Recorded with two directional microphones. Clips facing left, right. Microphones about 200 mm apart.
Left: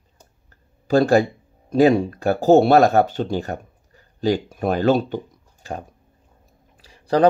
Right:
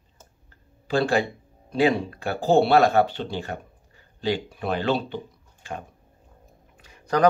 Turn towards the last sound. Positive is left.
turn(degrees=30)  # may be behind; listen again after turning